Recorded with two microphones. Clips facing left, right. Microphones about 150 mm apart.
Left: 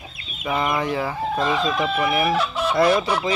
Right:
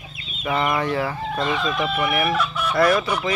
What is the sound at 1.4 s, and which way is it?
Speech, 35° left (ahead or behind).